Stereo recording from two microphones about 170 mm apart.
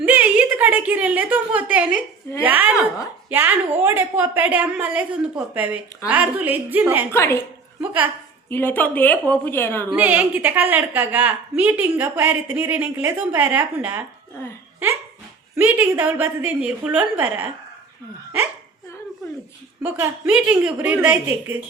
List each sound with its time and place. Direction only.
0.0 s a woman's voice: 10° right (ahead or behind)
7.1 s a woman's voice: 15° left (ahead or behind)
7.8 s a woman's voice: 10° right (ahead or behind)
8.4 s a woman's voice: 10° left (ahead or behind)
9.9 s a woman's voice: 10° right (ahead or behind)
15.5 s a woman's voice: 15° right (ahead or behind)
19.8 s a woman's voice: 10° right (ahead or behind)